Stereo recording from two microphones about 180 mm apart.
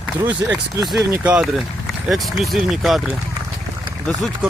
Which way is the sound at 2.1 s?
Centre (ahead or behind).